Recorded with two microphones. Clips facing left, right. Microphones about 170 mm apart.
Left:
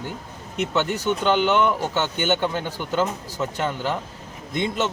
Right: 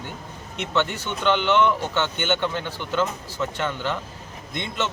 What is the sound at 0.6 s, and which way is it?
Speech, 40° left (ahead or behind).